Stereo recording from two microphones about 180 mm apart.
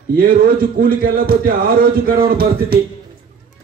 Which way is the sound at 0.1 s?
55° right (ahead or behind).